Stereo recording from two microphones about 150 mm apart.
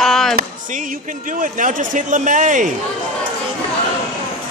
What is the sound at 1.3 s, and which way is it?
A man's voice, 60° right (ahead or behind).